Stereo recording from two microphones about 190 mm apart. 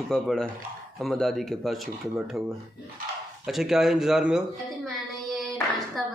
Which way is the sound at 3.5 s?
Centre (ahead or behind).